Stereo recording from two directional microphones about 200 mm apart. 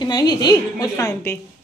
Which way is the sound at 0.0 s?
20° left (ahead or behind).